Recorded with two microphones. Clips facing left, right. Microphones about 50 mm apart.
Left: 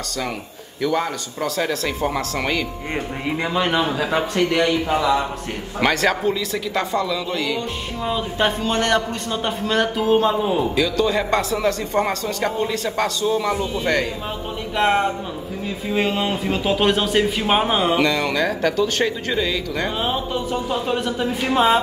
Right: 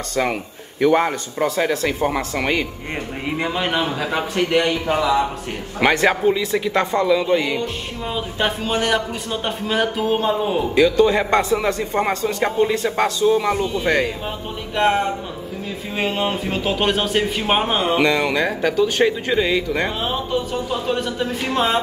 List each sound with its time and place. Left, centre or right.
0.1 s a man's voice: right
2.9 s a man's voice: centre
5.8 s a man's voice: centre
8.0 s a man's voice: centre
10.7 s a man's voice: right
13.5 s speech: centre
14.8 s a man's voice: centre
17.9 s speech: centre
20.9 s speech: centre